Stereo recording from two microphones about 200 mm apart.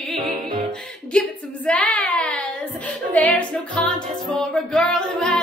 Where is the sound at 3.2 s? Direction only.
5° left (ahead or behind).